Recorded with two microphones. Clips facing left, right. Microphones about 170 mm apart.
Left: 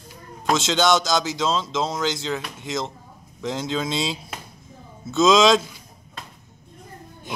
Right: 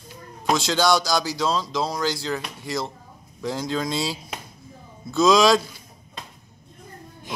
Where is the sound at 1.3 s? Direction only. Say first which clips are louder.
Left 1 dB; centre (ahead or behind).